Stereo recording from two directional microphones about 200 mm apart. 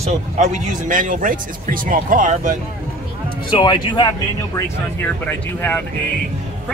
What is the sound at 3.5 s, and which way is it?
Speech, 25° left (ahead or behind).